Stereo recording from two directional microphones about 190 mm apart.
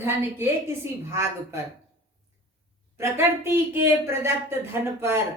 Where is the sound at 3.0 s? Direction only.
15° right (ahead or behind).